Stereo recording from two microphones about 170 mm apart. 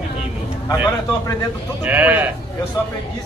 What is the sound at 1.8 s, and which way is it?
Speech, 10° right (ahead or behind).